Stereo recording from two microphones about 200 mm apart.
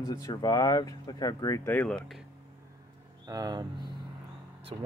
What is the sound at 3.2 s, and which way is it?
Speech, 20° right (ahead or behind).